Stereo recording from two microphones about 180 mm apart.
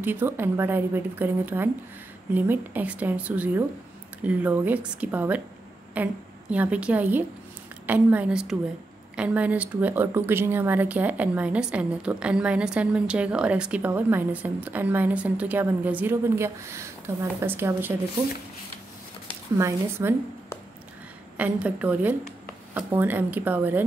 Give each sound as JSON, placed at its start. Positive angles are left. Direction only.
{"t": 0.0, "sound": "speech", "side_deg": -10}
{"t": 19.2, "sound": "a woman's voice", "side_deg": -15}
{"t": 21.4, "sound": "speech", "side_deg": -10}